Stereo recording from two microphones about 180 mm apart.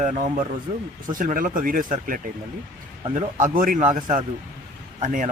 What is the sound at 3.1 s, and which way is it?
A man's voice, 45° right (ahead or behind).